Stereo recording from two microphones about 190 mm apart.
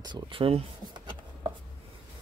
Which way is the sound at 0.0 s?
25° right (ahead or behind).